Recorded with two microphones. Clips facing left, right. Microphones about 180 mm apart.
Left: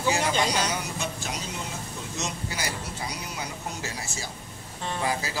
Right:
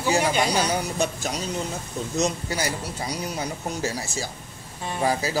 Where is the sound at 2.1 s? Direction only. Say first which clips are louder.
Right 9 dB; 40° right (ahead or behind).